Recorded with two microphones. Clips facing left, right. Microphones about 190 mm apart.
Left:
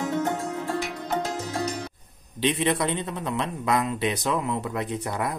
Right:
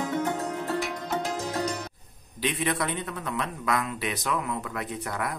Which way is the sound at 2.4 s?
25° left (ahead or behind).